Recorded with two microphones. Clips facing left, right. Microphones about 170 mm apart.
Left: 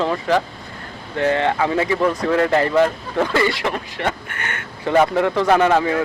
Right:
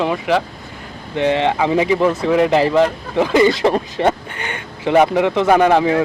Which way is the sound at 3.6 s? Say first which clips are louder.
Right 7 dB; 30° right (ahead or behind).